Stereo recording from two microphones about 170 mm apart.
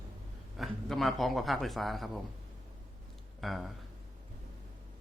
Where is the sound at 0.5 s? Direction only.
Centre (ahead or behind).